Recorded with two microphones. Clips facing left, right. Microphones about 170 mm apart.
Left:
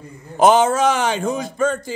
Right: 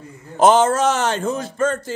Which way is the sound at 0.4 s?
10° left (ahead or behind).